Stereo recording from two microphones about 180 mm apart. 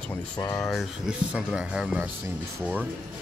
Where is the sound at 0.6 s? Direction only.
Centre (ahead or behind).